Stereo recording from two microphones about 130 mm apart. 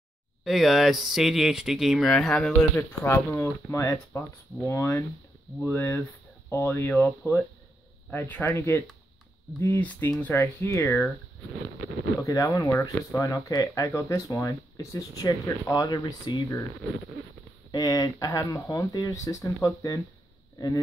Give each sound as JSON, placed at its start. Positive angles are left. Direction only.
{"t": 0.4, "sound": "speech", "side_deg": 0}
{"t": 2.7, "sound": "speech", "side_deg": 20}
{"t": 12.2, "sound": "speech", "side_deg": 25}
{"t": 17.6, "sound": "speech", "side_deg": 30}